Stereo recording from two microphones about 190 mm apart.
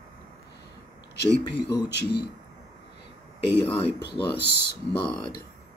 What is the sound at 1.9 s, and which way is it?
Speech, 65° left (ahead or behind).